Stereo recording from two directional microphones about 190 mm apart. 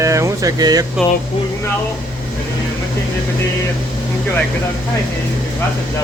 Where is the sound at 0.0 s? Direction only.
15° right (ahead or behind).